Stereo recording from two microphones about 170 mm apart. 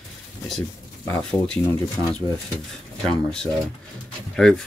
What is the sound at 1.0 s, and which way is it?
Speech, 5° left (ahead or behind).